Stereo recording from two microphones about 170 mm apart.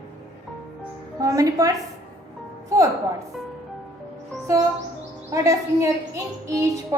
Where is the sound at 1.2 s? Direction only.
20° right (ahead or behind).